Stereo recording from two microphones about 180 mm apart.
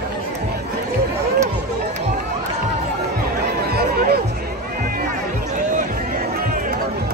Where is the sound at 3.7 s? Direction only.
60° right (ahead or behind).